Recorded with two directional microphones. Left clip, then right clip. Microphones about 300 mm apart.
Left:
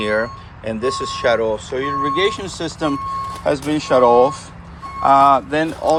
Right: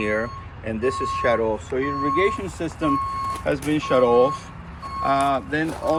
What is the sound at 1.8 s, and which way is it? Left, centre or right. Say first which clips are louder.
Speech: left 4 dB; left.